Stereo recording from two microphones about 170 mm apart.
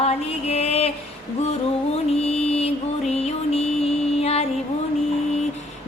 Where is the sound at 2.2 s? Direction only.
40° left (ahead or behind).